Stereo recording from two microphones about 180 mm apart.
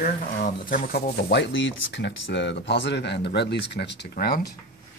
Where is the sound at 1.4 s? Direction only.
90° left; by 4.4 s 60° left (ahead or behind).